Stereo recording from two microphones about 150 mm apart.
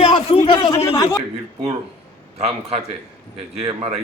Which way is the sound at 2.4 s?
40° right (ahead or behind).